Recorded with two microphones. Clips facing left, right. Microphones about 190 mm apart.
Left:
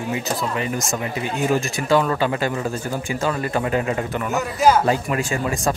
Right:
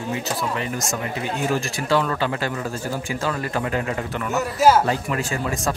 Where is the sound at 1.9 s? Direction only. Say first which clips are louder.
Left 3 dB; 15° left (ahead or behind).